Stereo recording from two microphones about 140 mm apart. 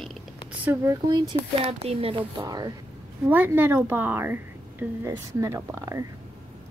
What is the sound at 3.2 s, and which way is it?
A woman's voice, 15° right (ahead or behind).